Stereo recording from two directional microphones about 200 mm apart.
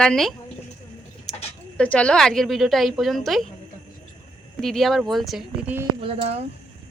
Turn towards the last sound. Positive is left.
turn(degrees=-30)  # may be behind; listen again after turning